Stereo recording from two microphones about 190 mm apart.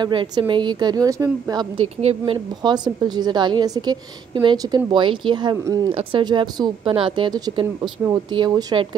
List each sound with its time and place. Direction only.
0.0 s a woman's voice: 25° right (ahead or behind)
2.0 s a woman's voice: 30° right (ahead or behind)